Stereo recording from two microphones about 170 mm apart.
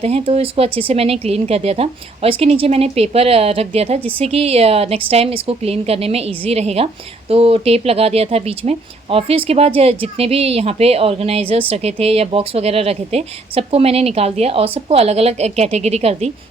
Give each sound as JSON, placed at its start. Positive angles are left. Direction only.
{"t": 0.0, "sound": "a woman's voice", "side_deg": -35}